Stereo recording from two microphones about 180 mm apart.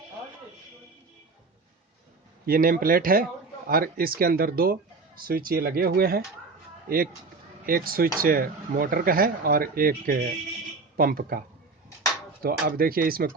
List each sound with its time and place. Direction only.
2.5 s a man's voice: 55° right (ahead or behind)